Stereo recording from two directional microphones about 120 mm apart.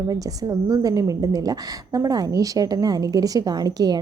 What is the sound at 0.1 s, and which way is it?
A woman's voice, 30° right (ahead or behind).